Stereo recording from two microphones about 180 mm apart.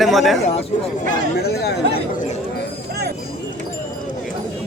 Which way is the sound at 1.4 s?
65° left (ahead or behind).